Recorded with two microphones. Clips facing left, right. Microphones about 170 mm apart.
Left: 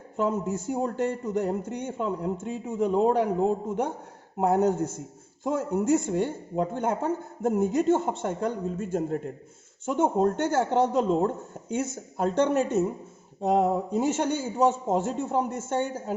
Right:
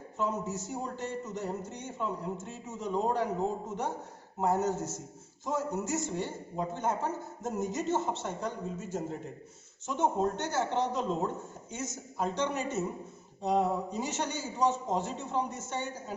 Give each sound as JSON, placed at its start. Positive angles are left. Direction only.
{"t": 0.2, "sound": "a man's voice", "side_deg": 55}
{"t": 4.4, "sound": "a man's voice", "side_deg": 60}